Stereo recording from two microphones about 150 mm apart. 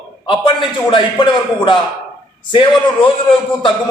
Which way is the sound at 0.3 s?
35° left (ahead or behind).